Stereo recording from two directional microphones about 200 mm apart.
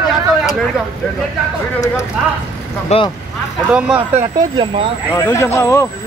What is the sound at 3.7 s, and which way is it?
Speech, 5° right (ahead or behind).